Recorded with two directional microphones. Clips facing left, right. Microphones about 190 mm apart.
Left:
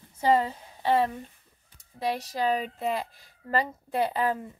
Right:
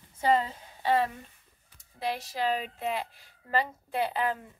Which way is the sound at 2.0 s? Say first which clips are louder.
Left 3 dB; 40° left (ahead or behind).